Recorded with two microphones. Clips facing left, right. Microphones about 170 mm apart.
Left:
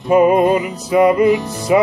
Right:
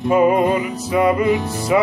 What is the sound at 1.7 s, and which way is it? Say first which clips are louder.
Music: left 4 dB; 25° left (ahead or behind).